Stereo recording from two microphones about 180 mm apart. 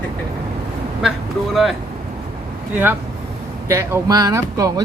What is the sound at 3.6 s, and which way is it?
Speech, 15° right (ahead or behind).